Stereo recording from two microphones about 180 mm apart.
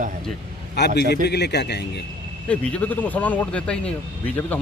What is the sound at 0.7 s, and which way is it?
A man's voice, 70° left (ahead or behind).